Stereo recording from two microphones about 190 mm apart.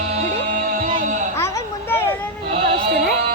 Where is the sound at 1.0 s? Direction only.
40° right (ahead or behind).